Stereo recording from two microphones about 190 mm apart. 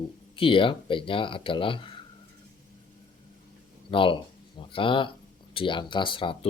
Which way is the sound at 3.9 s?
25° left (ahead or behind).